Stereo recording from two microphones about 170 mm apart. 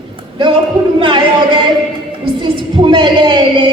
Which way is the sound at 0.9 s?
30° right (ahead or behind).